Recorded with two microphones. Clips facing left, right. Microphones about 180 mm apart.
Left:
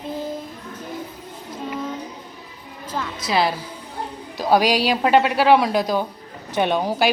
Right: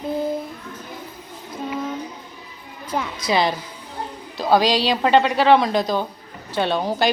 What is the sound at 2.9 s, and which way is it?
Speech, 15° right (ahead or behind).